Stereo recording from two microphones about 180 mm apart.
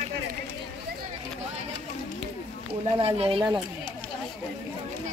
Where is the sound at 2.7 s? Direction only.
30° right (ahead or behind).